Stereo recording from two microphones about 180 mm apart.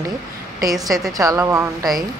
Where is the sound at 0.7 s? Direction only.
Centre (ahead or behind).